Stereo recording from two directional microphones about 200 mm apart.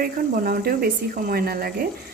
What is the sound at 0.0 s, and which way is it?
A woman's voice, 45° right (ahead or behind).